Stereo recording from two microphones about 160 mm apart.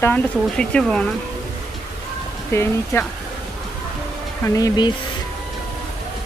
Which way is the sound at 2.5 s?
15° left (ahead or behind).